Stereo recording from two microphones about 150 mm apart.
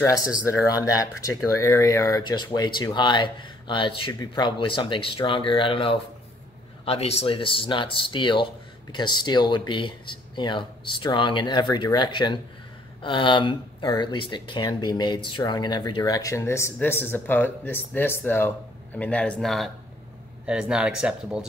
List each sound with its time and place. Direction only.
0.5 s speech: 20° left (ahead or behind); by 21.5 s 5° right (ahead or behind)